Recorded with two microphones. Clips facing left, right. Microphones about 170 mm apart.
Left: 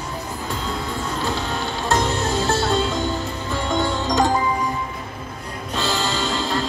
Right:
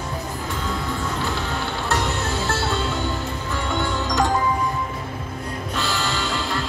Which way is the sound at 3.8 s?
35° left (ahead or behind).